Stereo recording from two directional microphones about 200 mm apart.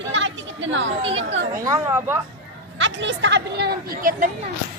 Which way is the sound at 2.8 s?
60° right (ahead or behind).